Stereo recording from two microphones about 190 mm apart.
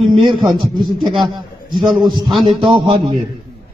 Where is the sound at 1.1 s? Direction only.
20° right (ahead or behind).